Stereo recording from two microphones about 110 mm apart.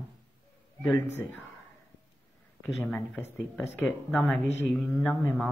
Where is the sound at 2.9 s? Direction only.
10° left (ahead or behind).